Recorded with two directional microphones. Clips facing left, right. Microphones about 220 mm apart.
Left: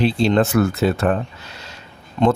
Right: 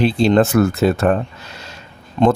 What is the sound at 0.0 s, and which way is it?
Speech, 45° right (ahead or behind).